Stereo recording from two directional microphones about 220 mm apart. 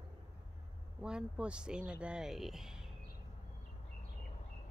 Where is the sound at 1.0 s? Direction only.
5° right (ahead or behind).